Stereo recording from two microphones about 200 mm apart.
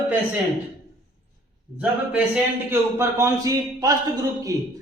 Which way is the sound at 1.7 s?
5° right (ahead or behind).